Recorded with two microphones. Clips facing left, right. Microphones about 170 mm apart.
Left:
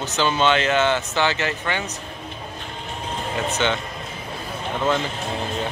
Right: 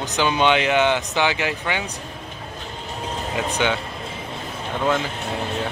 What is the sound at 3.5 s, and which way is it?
Speech, 10° right (ahead or behind).